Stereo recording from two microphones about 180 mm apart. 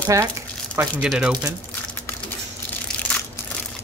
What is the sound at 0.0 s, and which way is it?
Speech, 15° right (ahead or behind).